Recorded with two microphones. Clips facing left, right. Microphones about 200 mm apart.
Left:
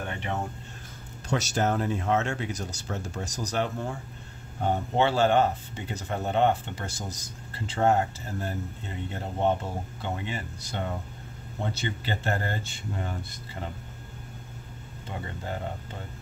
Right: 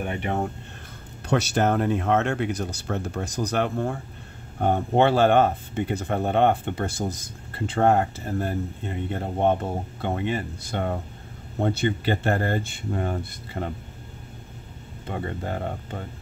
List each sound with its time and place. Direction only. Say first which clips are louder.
1.3 s speech: right 5 dB; 60° right (ahead or behind)
15.0 s speech: right 6 dB; 55° right (ahead or behind)